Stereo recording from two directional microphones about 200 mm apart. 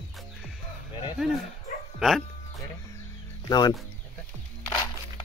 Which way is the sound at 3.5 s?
20° left (ahead or behind).